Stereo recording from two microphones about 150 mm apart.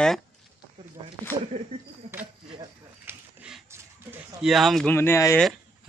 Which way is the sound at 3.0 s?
5° right (ahead or behind).